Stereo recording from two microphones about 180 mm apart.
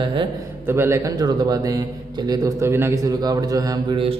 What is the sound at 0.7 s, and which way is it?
A man's voice, 15° right (ahead or behind).